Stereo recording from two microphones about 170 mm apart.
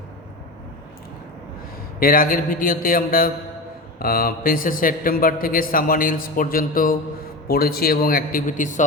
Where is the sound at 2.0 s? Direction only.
55° left (ahead or behind).